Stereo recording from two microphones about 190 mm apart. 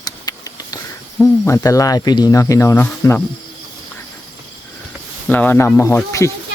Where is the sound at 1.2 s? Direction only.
15° left (ahead or behind).